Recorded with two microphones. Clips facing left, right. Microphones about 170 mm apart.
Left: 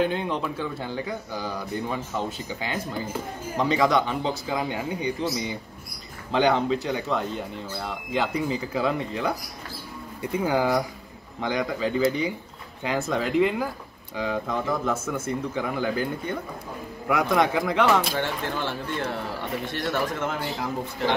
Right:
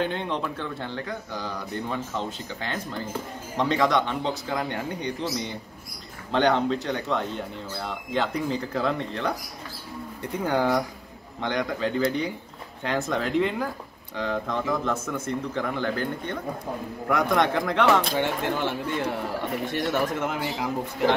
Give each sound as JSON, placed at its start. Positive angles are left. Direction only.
{"t": 0.0, "sound": "speech", "side_deg": 5}
{"t": 18.1, "sound": "speech", "side_deg": -15}